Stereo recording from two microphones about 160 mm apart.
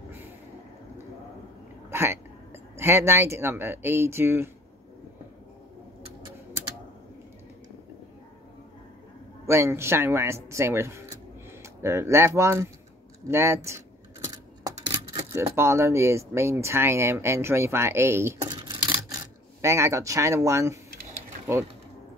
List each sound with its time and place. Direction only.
1.9 s speech: 15° right (ahead or behind)
9.5 s speech: 15° right (ahead or behind)
13.3 s a sound: 15° right (ahead or behind)
15.3 s speech: 15° right (ahead or behind)
18.5 s camera: 30° right (ahead or behind)